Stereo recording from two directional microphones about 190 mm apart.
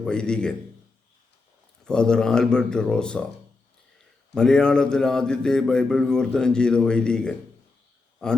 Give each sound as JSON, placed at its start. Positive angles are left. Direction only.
{"t": 0.0, "sound": "speech", "side_deg": 5}
{"t": 1.8, "sound": "speech", "side_deg": 5}
{"t": 4.4, "sound": "speech", "side_deg": 5}